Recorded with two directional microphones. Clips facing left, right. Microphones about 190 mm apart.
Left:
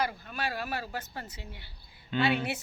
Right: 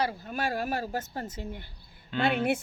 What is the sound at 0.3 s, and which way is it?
A woman's voice, 45° right (ahead or behind).